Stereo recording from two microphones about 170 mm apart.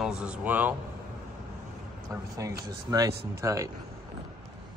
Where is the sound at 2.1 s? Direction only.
20° right (ahead or behind).